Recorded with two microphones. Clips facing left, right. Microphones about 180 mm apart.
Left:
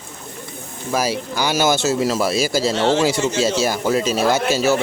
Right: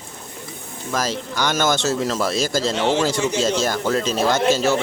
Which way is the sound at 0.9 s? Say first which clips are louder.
Left 3 dB; 10° left (ahead or behind).